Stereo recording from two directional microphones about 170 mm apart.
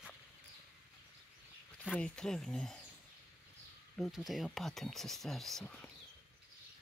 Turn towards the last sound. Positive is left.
turn(degrees=5)  # may be behind; listen again after turning